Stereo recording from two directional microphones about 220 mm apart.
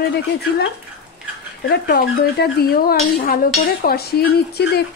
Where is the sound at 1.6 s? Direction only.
45° left (ahead or behind).